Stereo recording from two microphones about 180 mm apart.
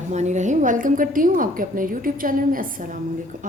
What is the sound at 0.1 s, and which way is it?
A woman's voice, 40° right (ahead or behind).